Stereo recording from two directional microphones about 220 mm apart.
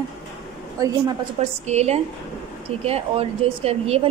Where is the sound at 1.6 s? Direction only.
30° right (ahead or behind).